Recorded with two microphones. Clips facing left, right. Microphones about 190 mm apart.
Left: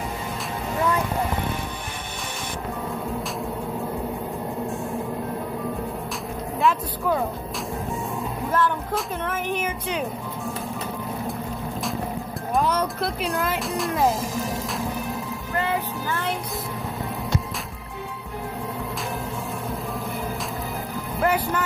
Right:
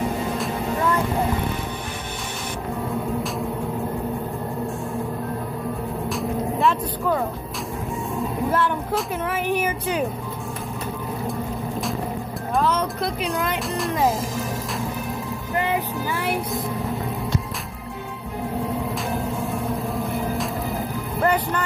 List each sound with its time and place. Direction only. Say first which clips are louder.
6.6 s speech: left 2 dB; centre (ahead or behind)
8.5 s speech: even; 10° right (ahead or behind)
9.3 s music: right 5 dB; 10° right (ahead or behind)
13.0 s speech: right 1 dB; centre (ahead or behind)
15.5 s music: right 2 dB; 15° right (ahead or behind)
19.7 s music: right 4 dB; centre (ahead or behind)
21.2 s speech: right 1 dB; 5° left (ahead or behind)